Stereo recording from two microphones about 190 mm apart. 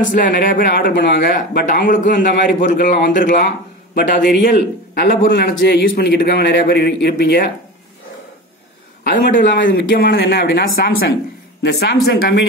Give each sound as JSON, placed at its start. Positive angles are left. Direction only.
{"t": 0.1, "sound": "speech", "side_deg": 45}
{"t": 3.3, "sound": "a man's voice", "side_deg": 55}
{"t": 9.0, "sound": "a man's voice", "side_deg": 45}
{"t": 11.6, "sound": "a man's voice", "side_deg": 60}